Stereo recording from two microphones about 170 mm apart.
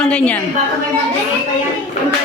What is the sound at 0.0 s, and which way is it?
Speech, 5° left (ahead or behind).